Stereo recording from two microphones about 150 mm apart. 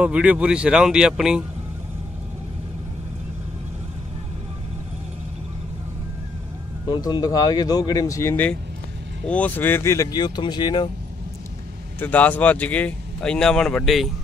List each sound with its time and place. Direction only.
0.0 s speech: 10° right (ahead or behind)
6.9 s speech: 25° left (ahead or behind)
12.0 s speech: 10° left (ahead or behind)